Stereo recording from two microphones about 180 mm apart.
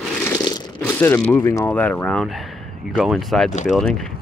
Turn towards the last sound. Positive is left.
turn(degrees=0)  # may be behind; listen again after turning